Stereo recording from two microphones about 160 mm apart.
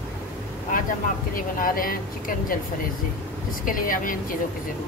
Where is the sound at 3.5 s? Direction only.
60° left (ahead or behind).